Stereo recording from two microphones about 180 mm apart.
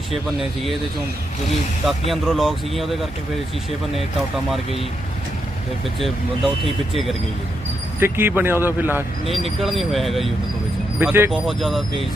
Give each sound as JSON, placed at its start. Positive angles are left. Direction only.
{"t": 1.9, "sound": "speech", "side_deg": 0}
{"t": 6.9, "sound": "speech", "side_deg": 0}
{"t": 7.9, "sound": "speech", "side_deg": -10}
{"t": 9.3, "sound": "speech", "side_deg": 0}
{"t": 11.0, "sound": "speech", "side_deg": -10}
{"t": 11.3, "sound": "speech", "side_deg": 0}